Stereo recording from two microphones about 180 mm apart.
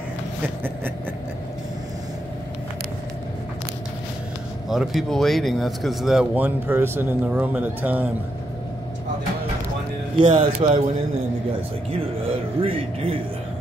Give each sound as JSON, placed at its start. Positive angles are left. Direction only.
{"t": 4.6, "sound": "speech", "side_deg": 0}
{"t": 10.1, "sound": "speech", "side_deg": -30}
{"t": 12.6, "sound": "speech", "side_deg": -30}